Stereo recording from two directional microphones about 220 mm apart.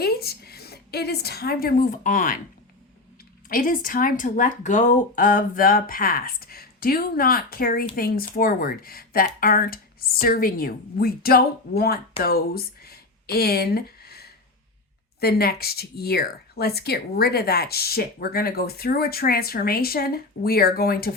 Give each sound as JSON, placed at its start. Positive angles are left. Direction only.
{"t": 0.0, "sound": "a woman's voice", "side_deg": 45}
{"t": 3.5, "sound": "speech", "side_deg": 40}
{"t": 12.2, "sound": "a sound", "side_deg": 45}
{"t": 15.2, "sound": "speech", "side_deg": 45}